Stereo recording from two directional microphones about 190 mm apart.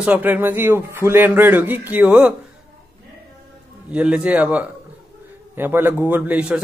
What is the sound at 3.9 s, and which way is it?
A man's voice, 5° right (ahead or behind).